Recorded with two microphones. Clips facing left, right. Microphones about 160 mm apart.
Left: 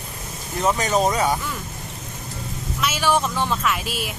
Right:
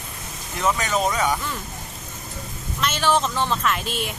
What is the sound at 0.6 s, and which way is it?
Speech, 35° left (ahead or behind).